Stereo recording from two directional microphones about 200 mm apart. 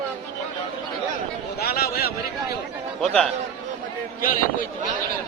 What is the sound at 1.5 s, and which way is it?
Speech, 50° left (ahead or behind).